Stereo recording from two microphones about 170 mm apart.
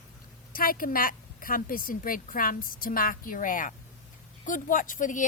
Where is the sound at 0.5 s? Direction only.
55° left (ahead or behind).